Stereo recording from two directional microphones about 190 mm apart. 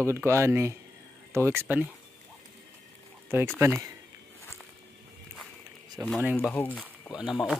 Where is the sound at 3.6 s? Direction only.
15° right (ahead or behind).